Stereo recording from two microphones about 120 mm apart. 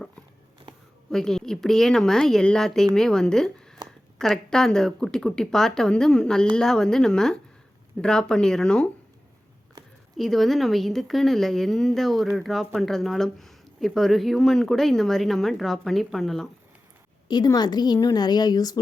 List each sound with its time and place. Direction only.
1.1 s speech: 5° left (ahead or behind)
10.2 s speech: centre (ahead or behind)
17.2 s a woman's voice: 35° left (ahead or behind)